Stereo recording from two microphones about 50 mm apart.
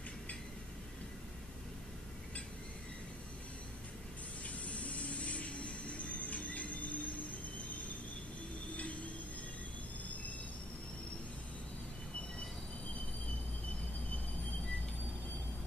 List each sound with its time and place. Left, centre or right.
4.6 s vehicle: left